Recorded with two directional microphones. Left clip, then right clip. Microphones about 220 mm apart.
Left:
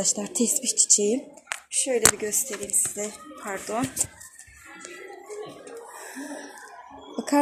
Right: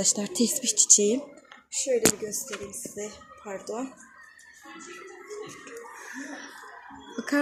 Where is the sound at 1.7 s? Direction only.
15° left (ahead or behind).